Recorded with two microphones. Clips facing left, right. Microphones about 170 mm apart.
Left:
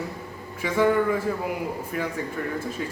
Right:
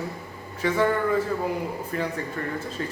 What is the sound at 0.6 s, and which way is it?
Speech, 10° left (ahead or behind).